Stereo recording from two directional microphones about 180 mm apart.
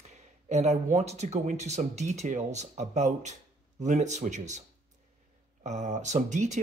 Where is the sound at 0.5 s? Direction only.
40° right (ahead or behind).